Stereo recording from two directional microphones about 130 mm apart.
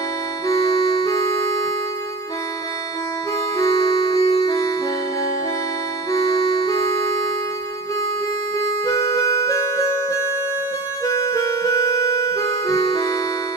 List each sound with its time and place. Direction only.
4.1 s music: 30° left (ahead or behind)
8.5 s music: 25° left (ahead or behind)
11.1 s music: 25° left (ahead or behind)